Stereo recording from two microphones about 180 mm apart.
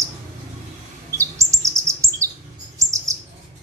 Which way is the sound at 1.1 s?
15° right (ahead or behind).